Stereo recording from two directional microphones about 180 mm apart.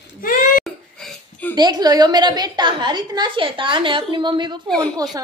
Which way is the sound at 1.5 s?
20° right (ahead or behind).